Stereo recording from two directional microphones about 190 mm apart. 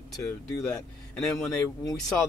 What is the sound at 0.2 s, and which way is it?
Speech, 15° left (ahead or behind).